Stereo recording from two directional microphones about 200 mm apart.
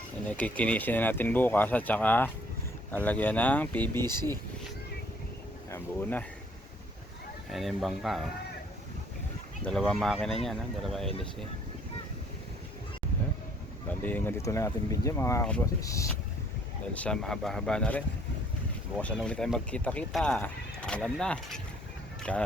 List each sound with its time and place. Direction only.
0.3 s speech: 5° left (ahead or behind)
4.0 s speech: 20° right (ahead or behind)
5.7 s speech: 10° left (ahead or behind)
7.5 s speech: centre (ahead or behind)
9.6 s speech: 5° left (ahead or behind)
13.8 s speech: 10° left (ahead or behind)
16.9 s speech: 5° left (ahead or behind)